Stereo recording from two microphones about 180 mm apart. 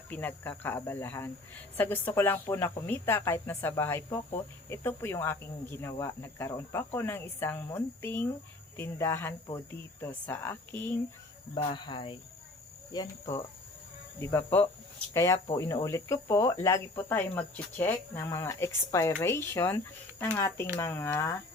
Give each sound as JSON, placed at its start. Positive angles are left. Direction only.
{"t": 0.1, "sound": "speech", "side_deg": 10}
{"t": 11.5, "sound": "speech", "side_deg": 30}